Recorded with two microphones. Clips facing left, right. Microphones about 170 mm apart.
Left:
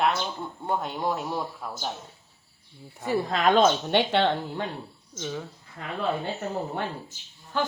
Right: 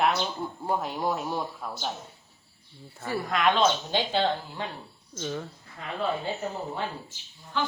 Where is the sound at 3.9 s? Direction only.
70° left (ahead or behind).